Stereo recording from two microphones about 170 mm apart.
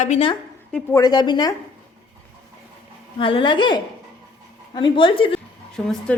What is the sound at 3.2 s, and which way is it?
A woman's voice, 30° left (ahead or behind).